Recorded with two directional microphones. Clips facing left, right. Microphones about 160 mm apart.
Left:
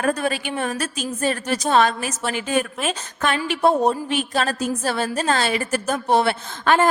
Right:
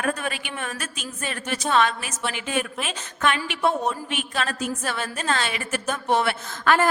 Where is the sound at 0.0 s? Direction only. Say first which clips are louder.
Left 5 dB; 35° left (ahead or behind).